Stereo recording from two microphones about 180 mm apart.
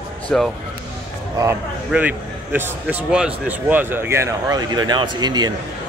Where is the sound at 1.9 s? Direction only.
10° right (ahead or behind).